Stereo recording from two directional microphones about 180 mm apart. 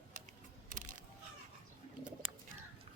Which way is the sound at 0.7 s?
45° right (ahead or behind).